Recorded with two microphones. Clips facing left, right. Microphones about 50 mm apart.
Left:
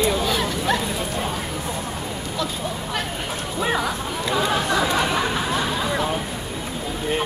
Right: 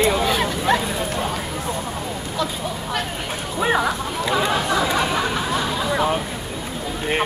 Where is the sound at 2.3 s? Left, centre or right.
Centre.